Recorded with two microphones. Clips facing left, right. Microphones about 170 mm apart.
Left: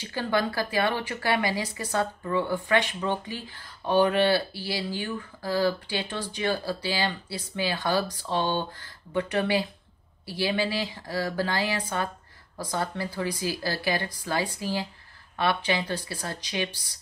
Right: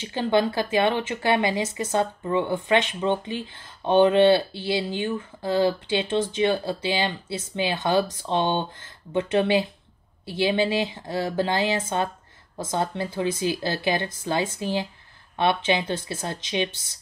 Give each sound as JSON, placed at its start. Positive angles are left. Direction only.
{"t": 0.0, "sound": "speech", "side_deg": -20}